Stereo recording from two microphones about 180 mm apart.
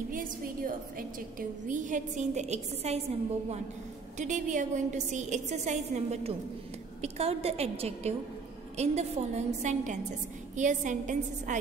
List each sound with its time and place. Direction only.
0.1 s a woman's voice: 50° right (ahead or behind)
4.2 s a woman's voice: 45° right (ahead or behind)